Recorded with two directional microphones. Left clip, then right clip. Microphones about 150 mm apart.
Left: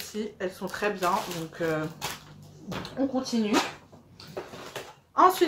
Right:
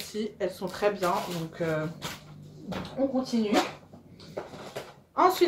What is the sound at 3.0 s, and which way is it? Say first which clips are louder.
Speech: right 1 dB; 15° left (ahead or behind).